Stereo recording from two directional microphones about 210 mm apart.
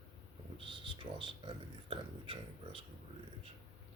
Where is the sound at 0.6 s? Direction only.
25° right (ahead or behind).